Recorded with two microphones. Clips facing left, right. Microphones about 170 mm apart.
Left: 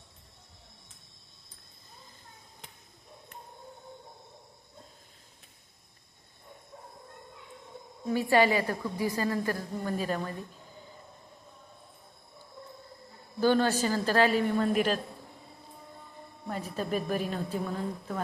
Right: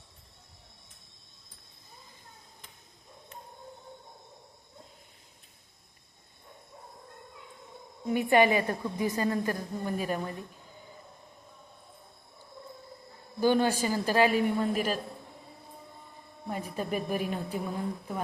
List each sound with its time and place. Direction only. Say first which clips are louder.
8.0 s a woman's voice: right 1 dB; 20° right (ahead or behind)
13.4 s a woman's voice: even; 15° right (ahead or behind)
16.5 s a woman's voice: left 1 dB; 15° right (ahead or behind)